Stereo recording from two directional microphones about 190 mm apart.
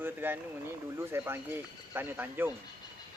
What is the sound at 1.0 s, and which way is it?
Speech, 10° right (ahead or behind).